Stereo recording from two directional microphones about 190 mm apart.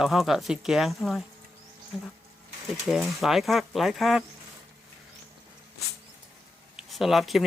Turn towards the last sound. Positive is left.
turn(degrees=0)  # may be behind; listen again after turning